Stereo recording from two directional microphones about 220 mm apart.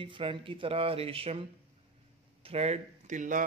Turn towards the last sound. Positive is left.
turn(degrees=-35)  # may be behind; listen again after turning